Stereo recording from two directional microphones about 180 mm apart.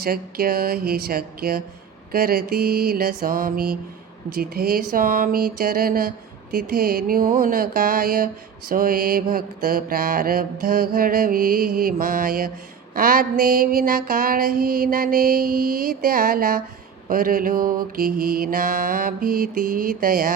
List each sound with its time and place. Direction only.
0.0 s speech: 55° right (ahead or behind)
8.7 s mantra: 55° right (ahead or behind)